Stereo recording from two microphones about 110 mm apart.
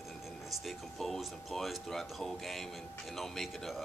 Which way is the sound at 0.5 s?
Centre (ahead or behind).